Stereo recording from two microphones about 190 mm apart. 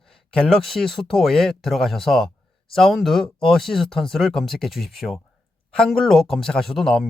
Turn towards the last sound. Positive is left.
turn(degrees=0)  # may be behind; listen again after turning